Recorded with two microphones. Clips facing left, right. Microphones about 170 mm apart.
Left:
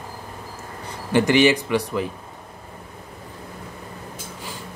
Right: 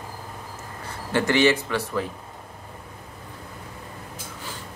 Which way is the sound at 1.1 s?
15° left (ahead or behind).